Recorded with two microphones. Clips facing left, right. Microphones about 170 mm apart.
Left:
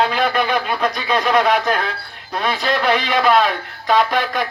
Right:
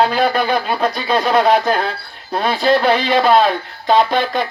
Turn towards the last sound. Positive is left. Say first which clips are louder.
# right 3 dB
turn(degrees=-30)  # may be behind; listen again after turning